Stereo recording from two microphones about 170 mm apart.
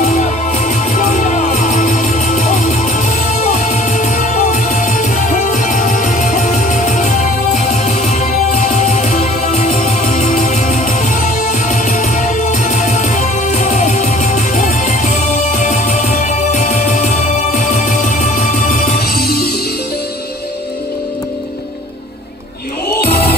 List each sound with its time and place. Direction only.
0.0 s music: 45° left (ahead or behind)
18.9 s music: 60° left (ahead or behind)